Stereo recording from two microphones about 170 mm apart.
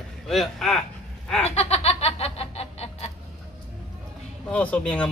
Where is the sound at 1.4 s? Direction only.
40° left (ahead or behind).